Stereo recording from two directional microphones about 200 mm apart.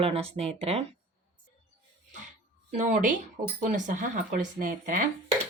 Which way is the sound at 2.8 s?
35° right (ahead or behind).